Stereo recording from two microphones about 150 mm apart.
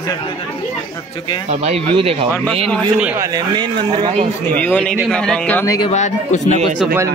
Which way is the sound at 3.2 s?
25° right (ahead or behind).